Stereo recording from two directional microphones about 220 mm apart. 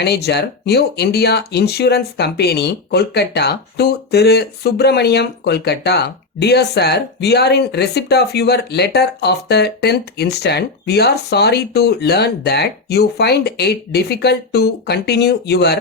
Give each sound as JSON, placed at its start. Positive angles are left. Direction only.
{"t": 0.0, "sound": "speech", "side_deg": 50}